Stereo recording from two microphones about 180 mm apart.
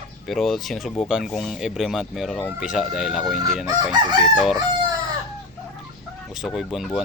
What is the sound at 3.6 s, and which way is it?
Chicken, 20° right (ahead or behind).